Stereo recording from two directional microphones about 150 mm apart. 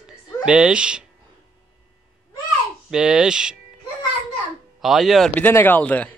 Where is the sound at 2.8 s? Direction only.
5° right (ahead or behind).